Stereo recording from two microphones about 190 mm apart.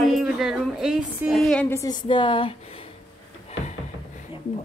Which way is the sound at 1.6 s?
15° left (ahead or behind).